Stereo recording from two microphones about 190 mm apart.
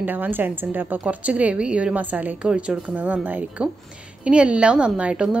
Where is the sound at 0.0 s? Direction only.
10° right (ahead or behind).